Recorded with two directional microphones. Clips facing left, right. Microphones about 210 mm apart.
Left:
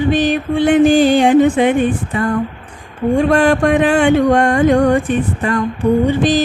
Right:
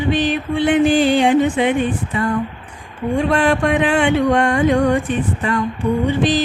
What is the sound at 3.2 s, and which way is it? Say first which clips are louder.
Music: left 3 dB; 45° left (ahead or behind).